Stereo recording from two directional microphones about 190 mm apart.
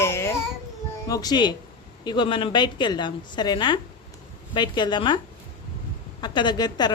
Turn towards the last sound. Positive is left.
turn(degrees=20)  # may be behind; listen again after turning